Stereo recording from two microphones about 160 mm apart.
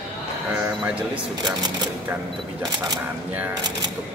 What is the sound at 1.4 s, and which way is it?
Speech, 25° right (ahead or behind).